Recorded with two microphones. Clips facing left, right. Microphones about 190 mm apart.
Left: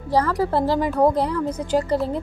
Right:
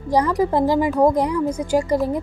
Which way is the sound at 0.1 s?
15° right (ahead or behind).